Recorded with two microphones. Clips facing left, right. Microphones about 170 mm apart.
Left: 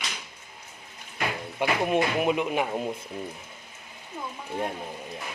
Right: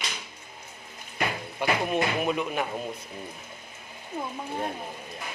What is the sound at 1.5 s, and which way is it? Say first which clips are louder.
Speech: left 2 dB; 15° left (ahead or behind).